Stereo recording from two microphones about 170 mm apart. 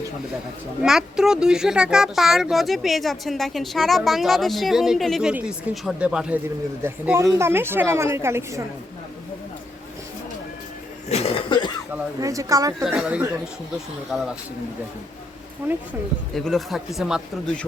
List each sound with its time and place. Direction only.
0.8 s a woman's voice: 5° right (ahead or behind)
11.1 s cough: 35° left (ahead or behind)
12.2 s a woman's voice: 20° right (ahead or behind)
12.8 s a woman's voice: 5° right (ahead or behind)
16.3 s speech: centre (ahead or behind)